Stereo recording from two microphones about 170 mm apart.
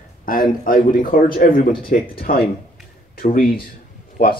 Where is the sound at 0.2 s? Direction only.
55° left (ahead or behind).